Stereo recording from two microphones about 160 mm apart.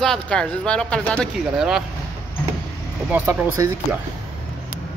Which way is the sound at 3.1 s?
10° right (ahead or behind).